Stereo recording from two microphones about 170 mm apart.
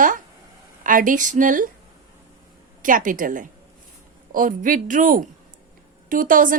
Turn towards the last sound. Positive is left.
turn(degrees=-55)  # may be behind; listen again after turning